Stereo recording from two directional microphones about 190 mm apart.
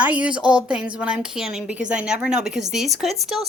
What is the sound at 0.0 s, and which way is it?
A woman's voice, 5° right (ahead or behind).